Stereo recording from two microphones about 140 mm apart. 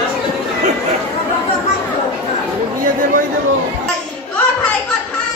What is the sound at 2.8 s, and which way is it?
Chatter, 70° right (ahead or behind).